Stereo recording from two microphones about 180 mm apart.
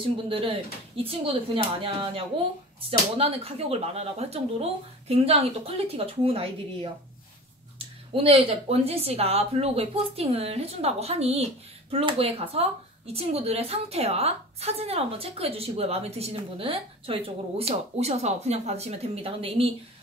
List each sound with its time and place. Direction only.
0.0 s speech: 30° right (ahead or behind)
8.1 s speech: 30° right (ahead or behind)